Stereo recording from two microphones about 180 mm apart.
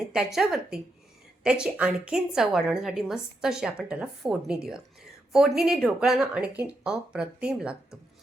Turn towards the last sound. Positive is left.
turn(degrees=-5)  # may be behind; listen again after turning